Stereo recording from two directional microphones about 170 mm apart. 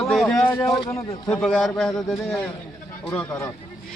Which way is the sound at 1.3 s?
5° left (ahead or behind).